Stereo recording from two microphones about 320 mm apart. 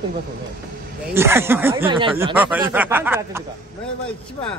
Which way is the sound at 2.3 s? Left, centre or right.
Centre.